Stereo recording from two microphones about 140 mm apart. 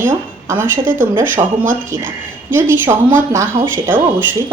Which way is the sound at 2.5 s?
15° right (ahead or behind).